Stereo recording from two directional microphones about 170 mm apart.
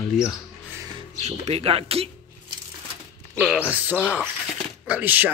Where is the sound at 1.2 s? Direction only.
40° right (ahead or behind).